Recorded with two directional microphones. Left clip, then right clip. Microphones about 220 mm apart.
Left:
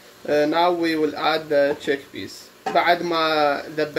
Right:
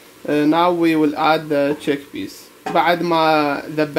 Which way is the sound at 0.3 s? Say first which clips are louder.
Right 3 dB; 35° right (ahead or behind).